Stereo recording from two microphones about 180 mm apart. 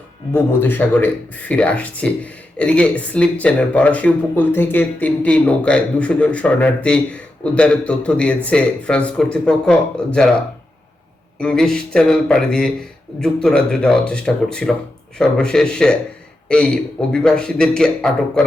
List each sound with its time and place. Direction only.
0.3 s a man's voice: 10° left (ahead or behind)
11.3 s a man's voice: 5° left (ahead or behind)